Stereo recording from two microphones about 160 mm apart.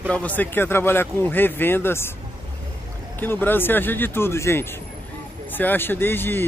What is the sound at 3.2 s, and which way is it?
Speech, 10° left (ahead or behind).